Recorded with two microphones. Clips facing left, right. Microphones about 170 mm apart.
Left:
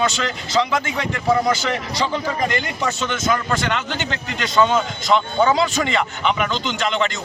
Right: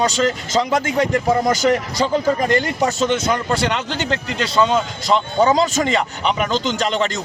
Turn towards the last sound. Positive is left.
turn(degrees=-40)  # may be behind; listen again after turning